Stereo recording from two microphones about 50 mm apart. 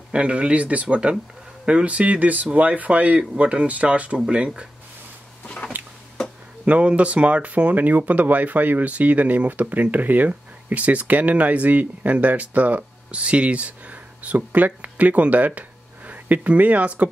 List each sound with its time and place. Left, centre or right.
0.1 s speech: right
5.7 s a sound: right
6.6 s speech: right